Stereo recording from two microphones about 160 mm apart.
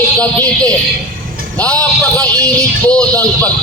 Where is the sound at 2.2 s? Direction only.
25° right (ahead or behind).